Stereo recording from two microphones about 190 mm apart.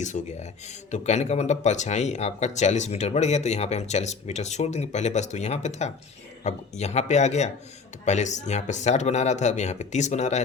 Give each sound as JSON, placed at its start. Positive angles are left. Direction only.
{"t": 0.0, "sound": "speech", "side_deg": 40}